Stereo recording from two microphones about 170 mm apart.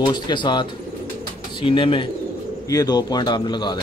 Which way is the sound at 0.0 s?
25° left (ahead or behind).